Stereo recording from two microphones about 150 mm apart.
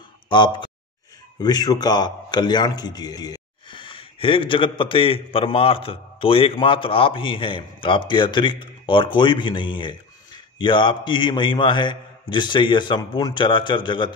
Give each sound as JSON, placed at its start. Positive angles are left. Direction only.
{"t": 0.3, "sound": "a man's voice", "side_deg": 30}